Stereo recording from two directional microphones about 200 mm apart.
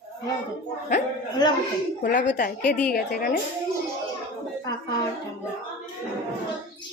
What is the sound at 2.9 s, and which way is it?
Speech, 45° left (ahead or behind).